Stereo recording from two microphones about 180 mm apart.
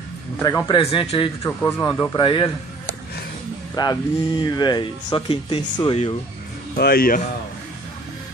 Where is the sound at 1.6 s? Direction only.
15° left (ahead or behind).